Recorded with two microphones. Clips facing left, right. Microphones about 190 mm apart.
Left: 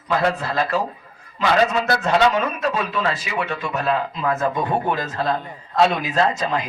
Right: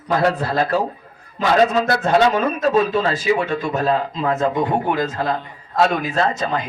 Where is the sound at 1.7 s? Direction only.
40° right (ahead or behind).